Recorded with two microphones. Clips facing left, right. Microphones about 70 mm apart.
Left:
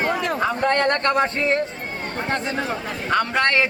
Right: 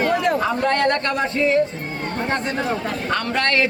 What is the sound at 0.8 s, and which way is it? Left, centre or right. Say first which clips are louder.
Speech: left 1 dB; left.